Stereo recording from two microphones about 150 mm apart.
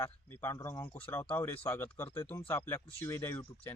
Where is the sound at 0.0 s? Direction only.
15° left (ahead or behind).